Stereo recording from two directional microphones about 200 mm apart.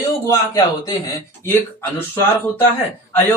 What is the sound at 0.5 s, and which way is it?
Speech, 20° left (ahead or behind).